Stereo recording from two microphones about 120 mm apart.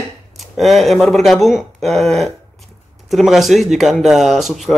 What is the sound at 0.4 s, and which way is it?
Speech, centre (ahead or behind).